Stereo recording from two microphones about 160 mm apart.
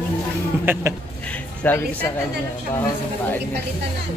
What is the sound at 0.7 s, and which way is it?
Speech, 15° right (ahead or behind).